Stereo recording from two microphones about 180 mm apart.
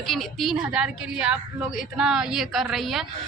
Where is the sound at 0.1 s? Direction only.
Centre (ahead or behind).